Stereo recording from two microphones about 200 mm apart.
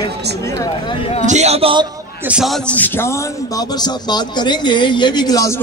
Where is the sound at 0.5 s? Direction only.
25° left (ahead or behind).